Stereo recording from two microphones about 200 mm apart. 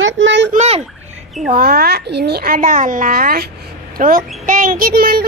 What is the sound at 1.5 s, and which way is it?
A child's voice, 45° right (ahead or behind).